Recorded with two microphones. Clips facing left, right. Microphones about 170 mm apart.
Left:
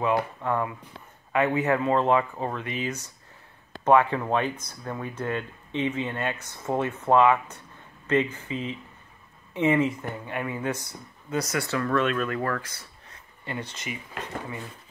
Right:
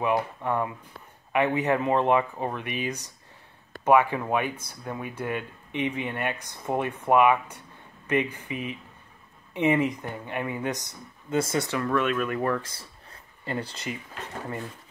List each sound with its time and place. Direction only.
0.0 s speech: 15° right (ahead or behind)
11.7 s speech: 10° right (ahead or behind)
12.6 s a sound: 30° right (ahead or behind)